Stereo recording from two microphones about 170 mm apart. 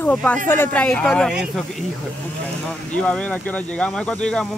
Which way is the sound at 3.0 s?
10° left (ahead or behind).